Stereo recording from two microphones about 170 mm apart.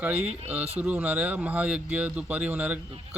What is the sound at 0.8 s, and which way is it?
Speech, 10° right (ahead or behind).